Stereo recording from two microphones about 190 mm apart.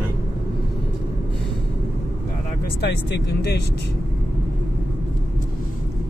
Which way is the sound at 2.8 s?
65° left (ahead or behind).